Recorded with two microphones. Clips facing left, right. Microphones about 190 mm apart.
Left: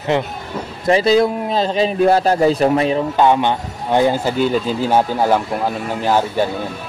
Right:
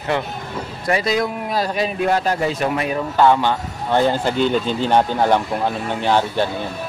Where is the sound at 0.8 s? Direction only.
30° left (ahead or behind); by 6.4 s 5° left (ahead or behind).